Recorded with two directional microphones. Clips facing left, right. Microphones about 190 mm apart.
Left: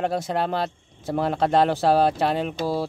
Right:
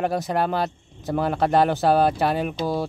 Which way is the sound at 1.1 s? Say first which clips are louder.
Even; centre (ahead or behind).